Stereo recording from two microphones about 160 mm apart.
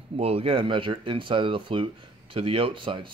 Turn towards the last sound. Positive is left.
turn(degrees=-30)  # may be behind; listen again after turning